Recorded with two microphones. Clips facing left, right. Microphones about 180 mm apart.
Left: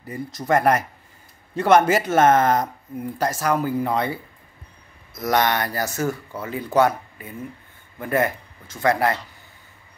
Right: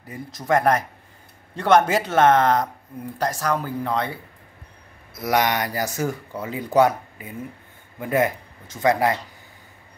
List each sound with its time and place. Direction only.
0.0 s speech: centre (ahead or behind)
5.1 s speech: 10° right (ahead or behind)